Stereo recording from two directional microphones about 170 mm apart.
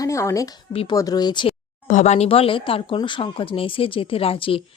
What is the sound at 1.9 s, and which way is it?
Speech, 45° left (ahead or behind).